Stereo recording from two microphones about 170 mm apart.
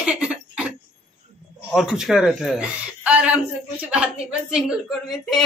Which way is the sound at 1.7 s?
Centre (ahead or behind).